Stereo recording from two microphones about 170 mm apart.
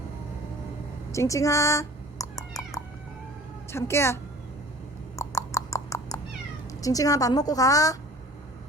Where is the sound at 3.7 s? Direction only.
15° left (ahead or behind).